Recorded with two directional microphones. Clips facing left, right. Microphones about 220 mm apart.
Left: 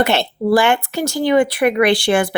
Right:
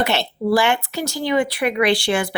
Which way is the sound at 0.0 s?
50° left (ahead or behind).